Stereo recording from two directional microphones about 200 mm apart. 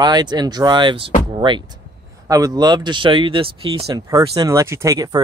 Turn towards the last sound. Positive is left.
turn(degrees=-15)  # may be behind; listen again after turning